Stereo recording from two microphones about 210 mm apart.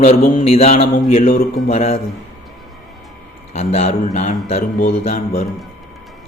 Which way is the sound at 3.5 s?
30° left (ahead or behind).